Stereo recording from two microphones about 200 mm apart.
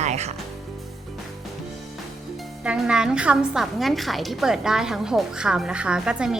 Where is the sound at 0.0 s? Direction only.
35° right (ahead or behind).